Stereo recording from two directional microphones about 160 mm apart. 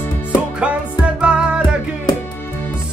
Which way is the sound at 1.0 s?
5° right (ahead or behind).